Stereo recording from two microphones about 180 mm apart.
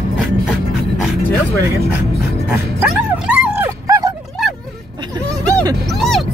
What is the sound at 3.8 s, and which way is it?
Dog, 20° right (ahead or behind).